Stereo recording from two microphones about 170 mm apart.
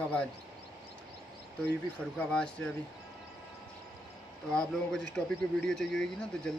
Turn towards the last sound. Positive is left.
turn(degrees=5)  # may be behind; listen again after turning